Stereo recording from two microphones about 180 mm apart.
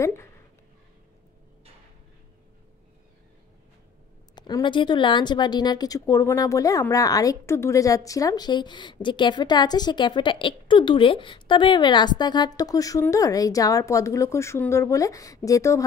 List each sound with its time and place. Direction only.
0.0 s speech: 15° left (ahead or behind)
4.4 s a woman's voice: 25° left (ahead or behind)